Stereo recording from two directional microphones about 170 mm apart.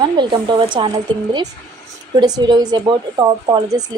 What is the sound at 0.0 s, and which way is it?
Speech, 25° right (ahead or behind).